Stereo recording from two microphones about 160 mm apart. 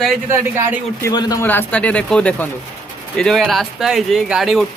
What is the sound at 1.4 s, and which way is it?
Speech, 10° left (ahead or behind).